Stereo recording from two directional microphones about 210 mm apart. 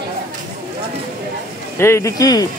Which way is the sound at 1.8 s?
15° left (ahead or behind).